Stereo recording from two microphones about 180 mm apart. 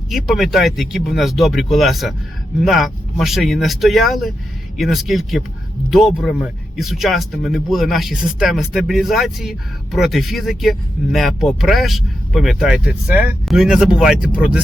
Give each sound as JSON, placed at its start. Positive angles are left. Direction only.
{"t": 0.1, "sound": "speech", "side_deg": 0}